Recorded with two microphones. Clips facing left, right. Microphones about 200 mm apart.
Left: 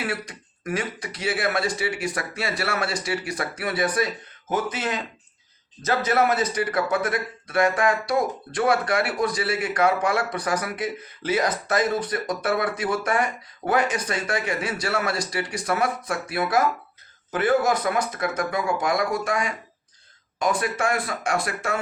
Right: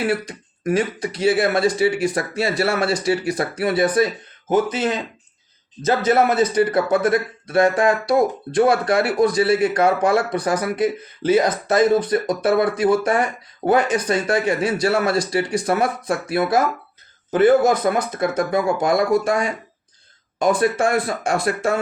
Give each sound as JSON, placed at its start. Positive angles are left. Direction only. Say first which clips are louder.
{"t": 0.3, "sound": "speech", "louder": "right 8 dB", "side_deg": -25}
{"t": 6.2, "sound": "speech", "louder": "right 6 dB", "side_deg": -25}
{"t": 20.4, "sound": "speech", "louder": "right 6 dB", "side_deg": -25}